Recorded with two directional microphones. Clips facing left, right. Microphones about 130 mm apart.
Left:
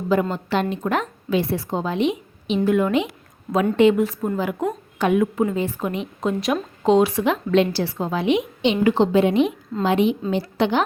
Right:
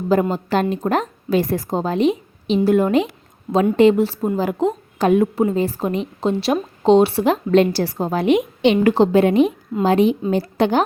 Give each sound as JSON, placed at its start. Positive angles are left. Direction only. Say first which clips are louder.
{"t": 0.1, "sound": "a woman's voice", "louder": "right 3 dB", "side_deg": -40}